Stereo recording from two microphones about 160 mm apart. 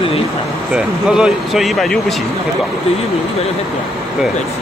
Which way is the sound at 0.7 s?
5° right (ahead or behind).